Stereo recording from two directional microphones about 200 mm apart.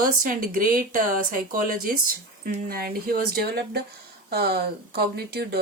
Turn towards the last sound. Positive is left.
turn(degrees=-55)  # may be behind; listen again after turning